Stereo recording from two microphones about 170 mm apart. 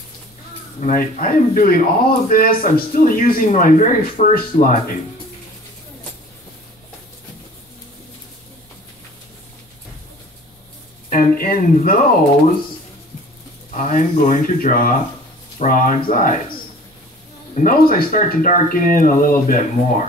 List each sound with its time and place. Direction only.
0.7 s speech: 50° left (ahead or behind)
11.1 s speech: 55° left (ahead or behind)
13.7 s speech: 50° left (ahead or behind)
17.6 s speech: 55° left (ahead or behind)